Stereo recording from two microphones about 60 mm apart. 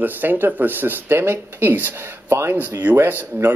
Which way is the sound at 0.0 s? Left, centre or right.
Right.